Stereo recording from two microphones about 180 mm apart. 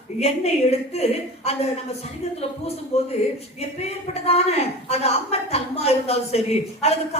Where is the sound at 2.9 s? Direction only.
35° left (ahead or behind).